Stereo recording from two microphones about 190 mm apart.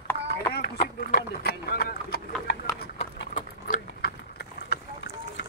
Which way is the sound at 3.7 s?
60° left (ahead or behind).